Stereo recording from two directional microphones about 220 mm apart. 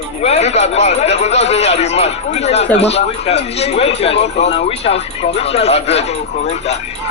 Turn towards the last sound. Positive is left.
turn(degrees=30)  # may be behind; listen again after turning